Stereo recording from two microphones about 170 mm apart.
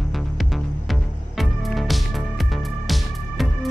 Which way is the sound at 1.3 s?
Centre (ahead or behind).